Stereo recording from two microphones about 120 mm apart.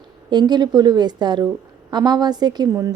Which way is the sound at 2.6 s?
25° right (ahead or behind).